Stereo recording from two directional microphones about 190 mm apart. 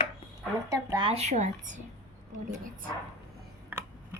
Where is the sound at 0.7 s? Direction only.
20° right (ahead or behind); by 1.8 s 40° right (ahead or behind).